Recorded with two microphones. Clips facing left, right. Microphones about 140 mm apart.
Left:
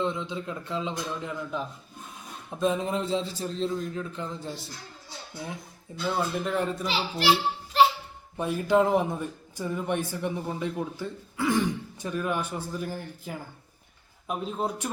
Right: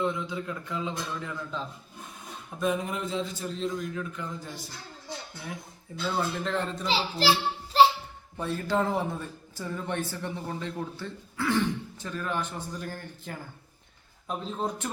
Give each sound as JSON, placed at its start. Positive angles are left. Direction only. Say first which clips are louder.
{"t": 0.0, "sound": "a man's voice", "louder": "even", "side_deg": 25}
{"t": 6.1, "sound": "a man's voice", "louder": "left 2 dB", "side_deg": 10}
{"t": 6.8, "sound": "a child's voice", "louder": "right 1 dB", "side_deg": -30}
{"t": 8.4, "sound": "a man's voice", "louder": "left 5 dB", "side_deg": 15}